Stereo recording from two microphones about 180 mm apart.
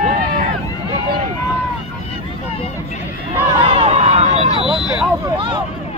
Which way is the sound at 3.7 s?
35° right (ahead or behind).